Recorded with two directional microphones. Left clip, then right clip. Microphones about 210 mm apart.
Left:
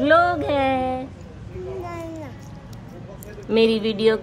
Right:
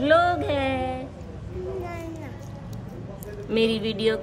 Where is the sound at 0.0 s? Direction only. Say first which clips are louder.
Left 3 dB; 15° left (ahead or behind).